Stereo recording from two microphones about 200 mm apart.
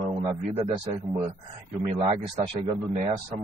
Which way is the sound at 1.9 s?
25° right (ahead or behind).